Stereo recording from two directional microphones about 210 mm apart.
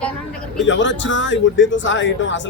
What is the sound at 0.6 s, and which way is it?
Speech, 60° left (ahead or behind).